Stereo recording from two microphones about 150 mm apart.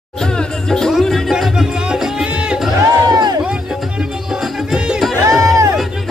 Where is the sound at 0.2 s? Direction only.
5° left (ahead or behind).